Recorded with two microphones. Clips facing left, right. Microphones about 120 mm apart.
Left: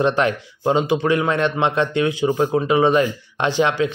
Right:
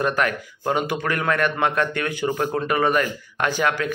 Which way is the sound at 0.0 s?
25° left (ahead or behind).